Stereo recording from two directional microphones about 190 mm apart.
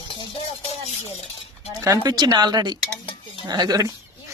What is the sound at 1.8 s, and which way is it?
Speech, 20° right (ahead or behind).